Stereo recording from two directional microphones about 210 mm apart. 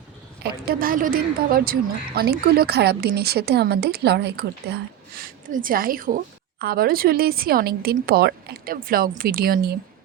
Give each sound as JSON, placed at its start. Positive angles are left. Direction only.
{"t": 0.4, "sound": "a woman's voice", "side_deg": -45}